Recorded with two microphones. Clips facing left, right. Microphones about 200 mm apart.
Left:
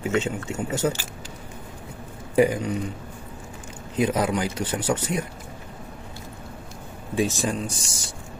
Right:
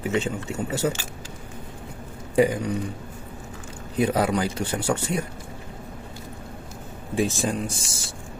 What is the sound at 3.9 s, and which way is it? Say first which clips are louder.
Speech: right 1 dB; 30° right (ahead or behind).